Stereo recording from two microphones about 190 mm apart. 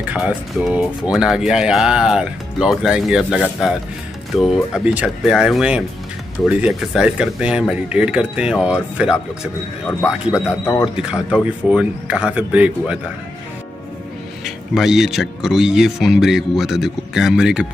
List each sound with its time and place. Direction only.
0.0 s speech: 5° right (ahead or behind)
10.6 s speech: 15° left (ahead or behind)
11.0 s speech: 5° right (ahead or behind)
14.4 s speech: centre (ahead or behind)